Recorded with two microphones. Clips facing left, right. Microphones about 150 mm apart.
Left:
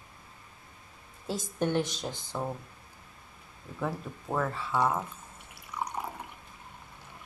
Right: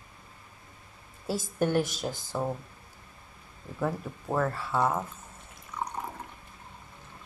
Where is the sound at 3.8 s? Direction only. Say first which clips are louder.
Right 3 dB; 5° right (ahead or behind).